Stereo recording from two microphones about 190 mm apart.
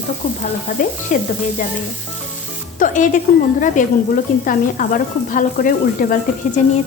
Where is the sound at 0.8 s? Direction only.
45° left (ahead or behind).